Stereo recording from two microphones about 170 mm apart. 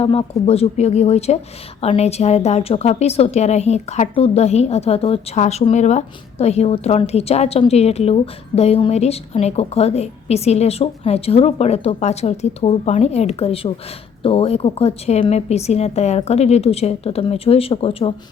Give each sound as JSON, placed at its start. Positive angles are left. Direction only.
{"t": 0.0, "sound": "a woman's voice", "side_deg": 35}